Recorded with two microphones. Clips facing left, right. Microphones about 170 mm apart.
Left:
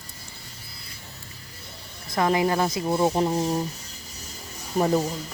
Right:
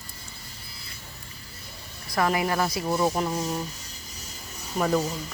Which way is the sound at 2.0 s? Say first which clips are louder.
Left 3 dB; 25° left (ahead or behind).